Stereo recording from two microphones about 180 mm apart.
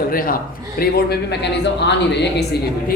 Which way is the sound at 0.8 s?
65° left (ahead or behind).